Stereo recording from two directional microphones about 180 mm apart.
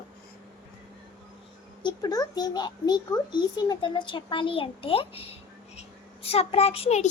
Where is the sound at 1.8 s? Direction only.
20° left (ahead or behind).